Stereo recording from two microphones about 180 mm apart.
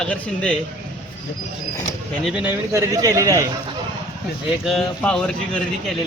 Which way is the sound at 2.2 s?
5° right (ahead or behind).